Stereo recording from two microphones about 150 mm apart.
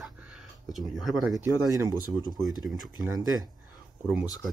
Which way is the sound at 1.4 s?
20° right (ahead or behind).